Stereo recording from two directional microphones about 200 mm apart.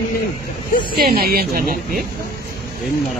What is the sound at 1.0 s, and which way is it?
Speech, 50° right (ahead or behind).